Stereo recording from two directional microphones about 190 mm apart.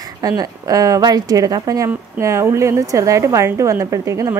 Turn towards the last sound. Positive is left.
turn(degrees=-15)  # may be behind; listen again after turning